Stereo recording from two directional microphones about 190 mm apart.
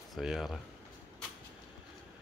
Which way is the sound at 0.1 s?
Centre (ahead or behind).